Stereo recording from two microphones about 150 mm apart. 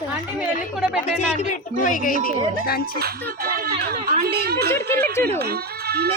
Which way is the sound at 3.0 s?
85° right.